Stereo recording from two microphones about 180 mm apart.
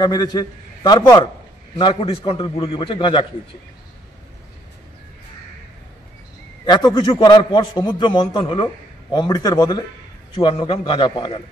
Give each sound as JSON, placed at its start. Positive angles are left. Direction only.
{"t": 0.0, "sound": "a man's voice", "side_deg": 25}
{"t": 6.6, "sound": "a man's voice", "side_deg": 25}